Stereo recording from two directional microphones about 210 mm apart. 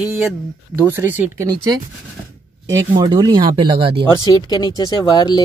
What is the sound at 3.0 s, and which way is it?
Speech, 20° right (ahead or behind).